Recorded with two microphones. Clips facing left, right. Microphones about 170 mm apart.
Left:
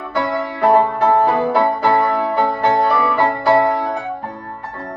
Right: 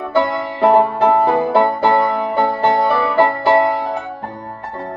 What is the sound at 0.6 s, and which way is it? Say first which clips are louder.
Music: right 2 dB; 25° right (ahead or behind).